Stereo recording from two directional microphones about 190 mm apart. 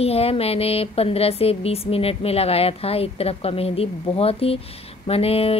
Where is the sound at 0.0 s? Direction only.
30° left (ahead or behind).